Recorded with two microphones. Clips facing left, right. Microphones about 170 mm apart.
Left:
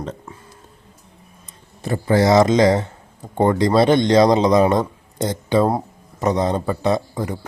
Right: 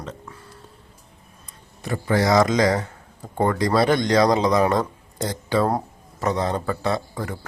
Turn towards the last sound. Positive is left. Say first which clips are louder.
# left 5 dB
turn(degrees=20)  # may be behind; listen again after turning